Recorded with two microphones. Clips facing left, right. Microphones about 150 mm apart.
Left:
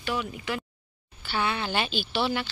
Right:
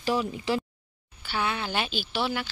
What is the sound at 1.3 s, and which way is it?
A woman's voice, 5° right (ahead or behind).